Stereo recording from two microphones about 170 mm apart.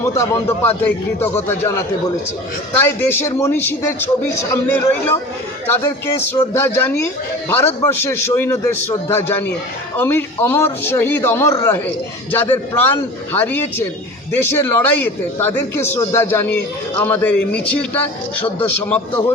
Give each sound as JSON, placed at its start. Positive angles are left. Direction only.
{"t": 0.0, "sound": "a man's voice", "side_deg": 15}
{"t": 2.7, "sound": "a man's voice", "side_deg": 10}